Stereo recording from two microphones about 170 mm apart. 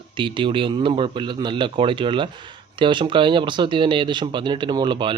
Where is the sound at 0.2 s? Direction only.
30° right (ahead or behind).